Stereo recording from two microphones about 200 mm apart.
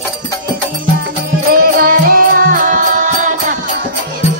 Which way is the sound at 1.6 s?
45° right (ahead or behind).